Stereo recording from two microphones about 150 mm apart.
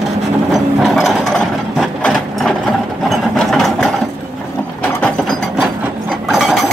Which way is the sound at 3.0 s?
Centre (ahead or behind).